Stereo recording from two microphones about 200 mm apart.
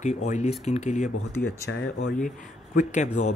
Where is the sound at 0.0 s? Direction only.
35° left (ahead or behind).